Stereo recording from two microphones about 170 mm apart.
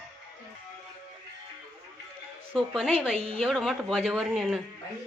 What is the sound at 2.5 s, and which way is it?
Speech, centre (ahead or behind).